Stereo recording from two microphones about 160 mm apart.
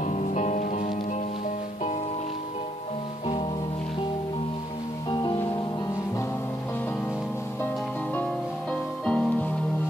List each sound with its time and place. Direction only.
0.0 s music: 50° left (ahead or behind)
5.1 s music: 25° left (ahead or behind)
9.0 s music: 5° left (ahead or behind)